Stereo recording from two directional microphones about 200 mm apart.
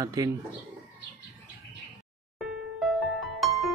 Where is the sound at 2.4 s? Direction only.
Centre (ahead or behind).